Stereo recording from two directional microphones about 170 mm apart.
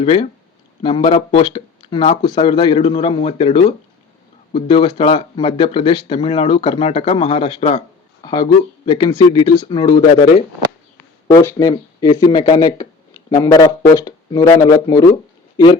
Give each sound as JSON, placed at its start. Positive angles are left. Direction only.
{"t": 0.0, "sound": "speech", "side_deg": 35}
{"t": 8.2, "sound": "speech", "side_deg": 25}
{"t": 10.9, "sound": "speech", "side_deg": 15}